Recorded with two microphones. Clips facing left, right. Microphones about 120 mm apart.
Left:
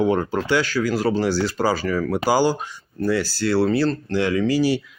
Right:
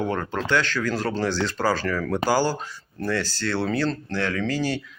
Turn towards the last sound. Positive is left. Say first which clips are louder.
# left 6 dB
turn(degrees=10)  # may be behind; listen again after turning